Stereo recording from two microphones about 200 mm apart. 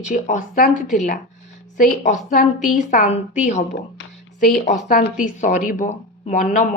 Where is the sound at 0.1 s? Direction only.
40° left (ahead or behind).